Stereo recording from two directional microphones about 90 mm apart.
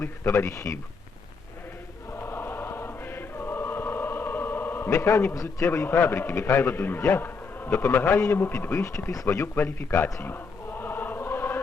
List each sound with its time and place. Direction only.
0.0 s speech: 30° left (ahead or behind)
2.1 s choir: 25° left (ahead or behind)
5.6 s a man's voice: 25° left (ahead or behind)